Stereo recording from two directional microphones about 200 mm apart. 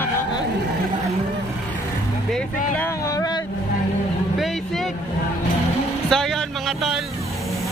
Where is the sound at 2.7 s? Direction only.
10° left (ahead or behind).